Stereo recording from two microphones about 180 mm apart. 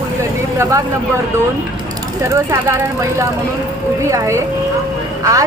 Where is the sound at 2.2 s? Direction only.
15° right (ahead or behind).